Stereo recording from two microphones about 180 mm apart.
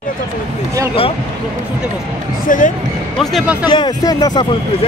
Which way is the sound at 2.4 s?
45° left (ahead or behind).